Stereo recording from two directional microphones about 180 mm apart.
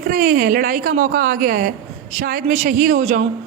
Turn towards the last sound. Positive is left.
turn(degrees=-40)  # may be behind; listen again after turning